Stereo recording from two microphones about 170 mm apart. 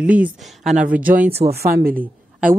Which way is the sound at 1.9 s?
10° right (ahead or behind).